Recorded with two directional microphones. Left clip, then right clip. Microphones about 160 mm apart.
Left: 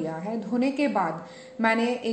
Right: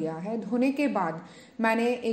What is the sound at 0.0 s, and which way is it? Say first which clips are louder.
A woman's voice: left 1 dB; 45° right (ahead or behind).